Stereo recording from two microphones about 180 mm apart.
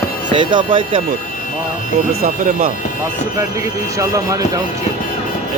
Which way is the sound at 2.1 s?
55° right (ahead or behind).